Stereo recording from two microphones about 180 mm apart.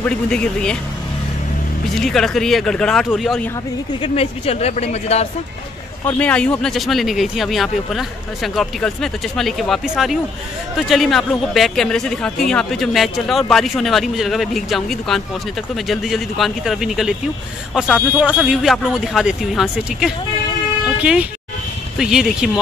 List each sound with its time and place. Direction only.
0.3 s a man's voice: 5° left (ahead or behind)
2.0 s a man's voice: centre (ahead or behind)
4.0 s speech: 35° left (ahead or behind)
6.0 s a man's voice: 10° left (ahead or behind)